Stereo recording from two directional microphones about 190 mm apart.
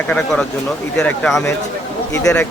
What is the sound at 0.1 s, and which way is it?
A man's voice, 5° left (ahead or behind).